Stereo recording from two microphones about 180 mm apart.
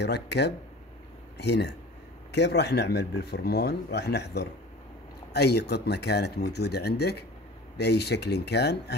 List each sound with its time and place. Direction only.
0.0 s speech: 70° left (ahead or behind)